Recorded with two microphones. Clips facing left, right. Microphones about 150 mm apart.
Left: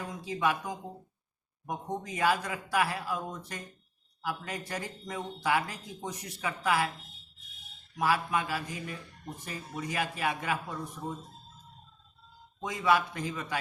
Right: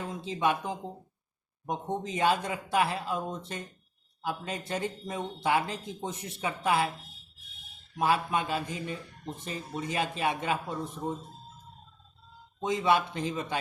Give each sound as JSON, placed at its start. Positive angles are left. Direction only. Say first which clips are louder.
{"t": 0.1, "sound": "speech", "louder": "right 2 dB", "side_deg": -25}
{"t": 7.9, "sound": "speech", "louder": "right 2 dB", "side_deg": -25}
{"t": 12.6, "sound": "speech", "louder": "right 2 dB", "side_deg": -25}